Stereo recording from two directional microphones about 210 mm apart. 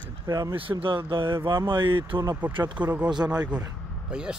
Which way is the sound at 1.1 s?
25° right (ahead or behind).